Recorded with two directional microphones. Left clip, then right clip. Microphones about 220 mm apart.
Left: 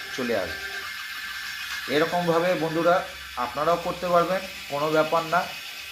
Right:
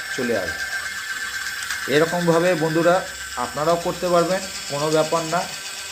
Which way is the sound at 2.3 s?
35° right (ahead or behind).